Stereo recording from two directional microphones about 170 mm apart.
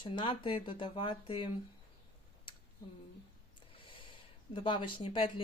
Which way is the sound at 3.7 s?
30° left (ahead or behind).